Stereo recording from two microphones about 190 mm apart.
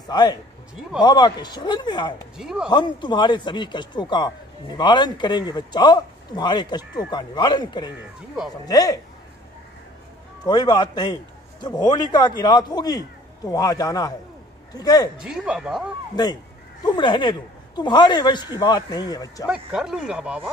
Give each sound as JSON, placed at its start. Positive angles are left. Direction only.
{"t": 0.0, "sound": "a man's voice", "side_deg": 20}
{"t": 2.3, "sound": "speech", "side_deg": -5}
{"t": 2.7, "sound": "speech", "side_deg": 25}
{"t": 10.4, "sound": "speech", "side_deg": 20}
{"t": 15.1, "sound": "speech", "side_deg": -5}
{"t": 16.8, "sound": "speech", "side_deg": 25}
{"t": 19.4, "sound": "speech", "side_deg": -5}